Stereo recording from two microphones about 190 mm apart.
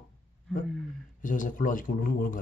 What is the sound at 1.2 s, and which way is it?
A man's voice, 45° left (ahead or behind).